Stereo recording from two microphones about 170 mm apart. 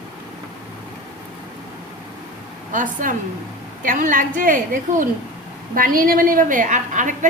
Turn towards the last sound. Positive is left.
turn(degrees=-45)  # may be behind; listen again after turning